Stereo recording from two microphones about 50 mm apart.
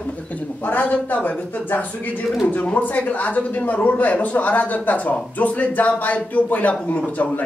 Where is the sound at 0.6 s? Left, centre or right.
Left.